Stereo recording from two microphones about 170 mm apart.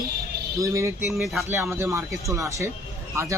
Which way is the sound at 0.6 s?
15° right (ahead or behind).